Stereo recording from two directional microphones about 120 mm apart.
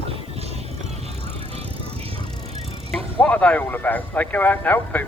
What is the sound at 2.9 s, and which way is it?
Speech, 10° left (ahead or behind).